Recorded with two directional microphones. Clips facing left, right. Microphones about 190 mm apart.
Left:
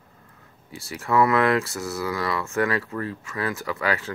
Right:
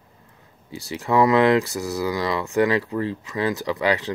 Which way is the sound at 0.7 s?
20° right (ahead or behind).